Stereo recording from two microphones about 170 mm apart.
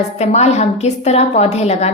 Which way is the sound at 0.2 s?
40° left (ahead or behind).